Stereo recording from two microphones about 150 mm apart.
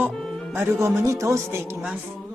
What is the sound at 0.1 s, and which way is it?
Music, centre (ahead or behind).